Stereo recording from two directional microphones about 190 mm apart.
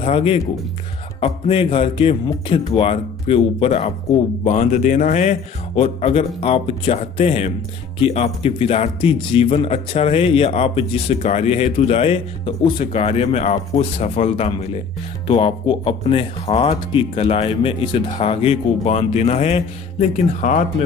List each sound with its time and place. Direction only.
0.0 s speech: 30° left (ahead or behind)